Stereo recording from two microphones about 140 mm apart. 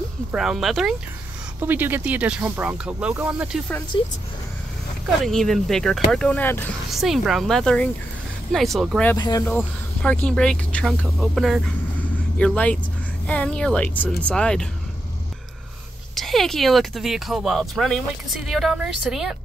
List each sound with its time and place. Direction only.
0.3 s speech: 5° right (ahead or behind)
1.6 s speech: 15° right (ahead or behind)
3.9 s speech: 35° left (ahead or behind)
5.2 s speech: 5° left (ahead or behind)
6.9 s speech: centre (ahead or behind)
9.1 s speech: 25° left (ahead or behind)
9.5 s speech: 10° left (ahead or behind)
12.0 s vehicle: 10° left (ahead or behind)
13.3 s speech: 10° left (ahead or behind)
16.2 s speech: centre (ahead or behind)